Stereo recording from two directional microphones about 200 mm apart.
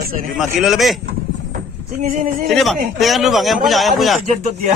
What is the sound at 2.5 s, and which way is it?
Speech, centre (ahead or behind).